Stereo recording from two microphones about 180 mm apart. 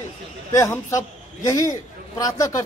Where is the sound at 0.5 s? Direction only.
15° left (ahead or behind).